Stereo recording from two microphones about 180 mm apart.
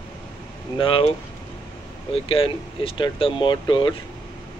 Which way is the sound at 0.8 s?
30° left (ahead or behind).